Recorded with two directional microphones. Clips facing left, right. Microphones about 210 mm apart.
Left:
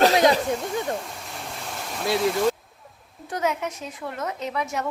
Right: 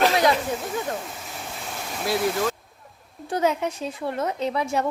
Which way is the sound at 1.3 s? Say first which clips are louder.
Even; centre (ahead or behind).